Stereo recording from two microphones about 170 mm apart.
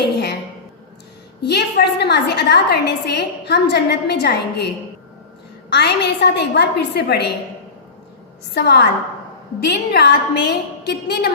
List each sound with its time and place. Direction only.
1.4 s a woman's voice: 75° left (ahead or behind)
5.7 s a woman's voice: 75° left (ahead or behind)
8.5 s a woman's voice: 75° left (ahead or behind)